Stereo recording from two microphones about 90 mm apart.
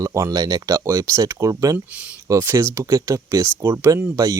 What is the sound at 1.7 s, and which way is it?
Speech, 15° right (ahead or behind).